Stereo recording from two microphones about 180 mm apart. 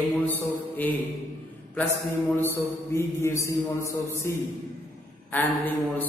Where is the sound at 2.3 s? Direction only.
15° left (ahead or behind).